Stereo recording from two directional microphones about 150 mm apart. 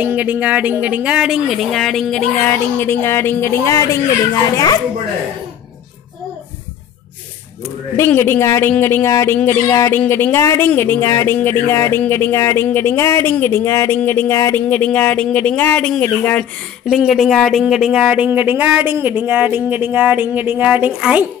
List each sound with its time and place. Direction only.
0.0 s speech: 10° right (ahead or behind); by 2.5 s 5° left (ahead or behind)
2.5 s speech: 15° left (ahead or behind)
8.0 s speech: 15° left (ahead or behind)
16.8 s speech: centre (ahead or behind)